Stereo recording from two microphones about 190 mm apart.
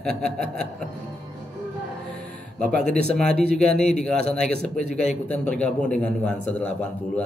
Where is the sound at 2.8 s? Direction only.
5° left (ahead or behind).